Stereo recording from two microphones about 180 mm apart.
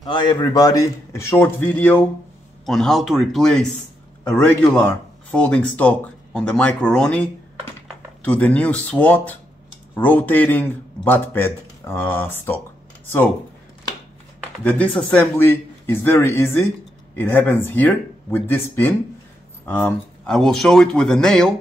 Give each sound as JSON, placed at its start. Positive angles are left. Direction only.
{"t": 0.0, "sound": "a man's voice", "side_deg": 25}
{"t": 14.6, "sound": "a man's voice", "side_deg": 10}